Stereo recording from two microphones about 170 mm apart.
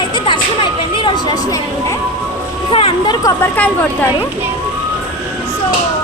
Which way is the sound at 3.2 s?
10° left (ahead or behind).